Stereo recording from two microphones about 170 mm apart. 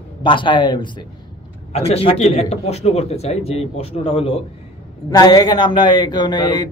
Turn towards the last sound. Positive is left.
turn(degrees=25)  # may be behind; listen again after turning